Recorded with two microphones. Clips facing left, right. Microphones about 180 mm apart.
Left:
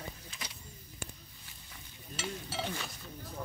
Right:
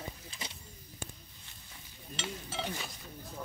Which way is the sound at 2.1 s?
5° left (ahead or behind).